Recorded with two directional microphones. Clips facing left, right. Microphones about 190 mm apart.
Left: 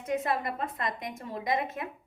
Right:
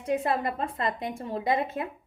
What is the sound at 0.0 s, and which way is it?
A woman's voice, 30° right (ahead or behind).